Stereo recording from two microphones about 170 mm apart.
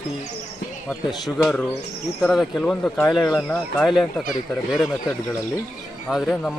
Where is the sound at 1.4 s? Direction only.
5° left (ahead or behind).